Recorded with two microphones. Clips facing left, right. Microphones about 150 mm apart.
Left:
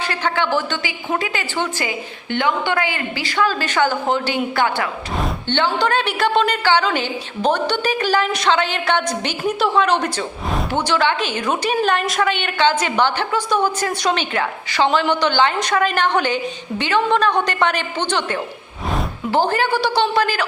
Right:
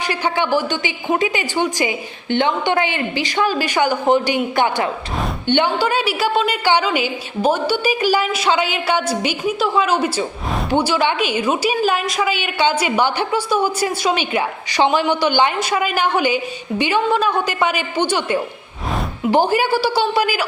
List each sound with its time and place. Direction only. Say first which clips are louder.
0.0 s a woman's voice: right 1 dB; 15° right (ahead or behind)